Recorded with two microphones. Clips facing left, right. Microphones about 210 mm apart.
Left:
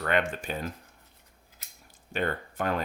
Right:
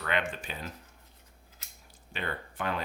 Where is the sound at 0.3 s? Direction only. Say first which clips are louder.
Left 5 dB; 45° left (ahead or behind).